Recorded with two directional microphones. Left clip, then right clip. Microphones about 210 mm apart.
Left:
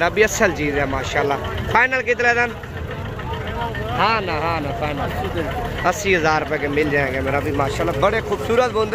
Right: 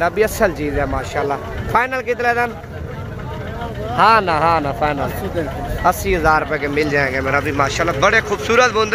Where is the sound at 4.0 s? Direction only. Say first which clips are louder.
Right 7 dB; 25° right (ahead or behind).